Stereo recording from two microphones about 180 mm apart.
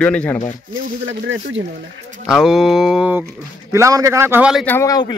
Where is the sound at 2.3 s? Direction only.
5° right (ahead or behind).